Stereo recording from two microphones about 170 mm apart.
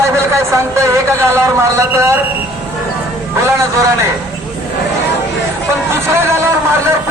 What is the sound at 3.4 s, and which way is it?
Speech, 15° right (ahead or behind).